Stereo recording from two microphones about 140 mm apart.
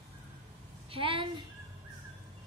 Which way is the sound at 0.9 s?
40° right (ahead or behind).